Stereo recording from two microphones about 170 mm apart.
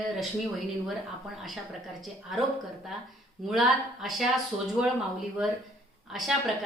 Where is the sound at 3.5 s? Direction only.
Centre (ahead or behind).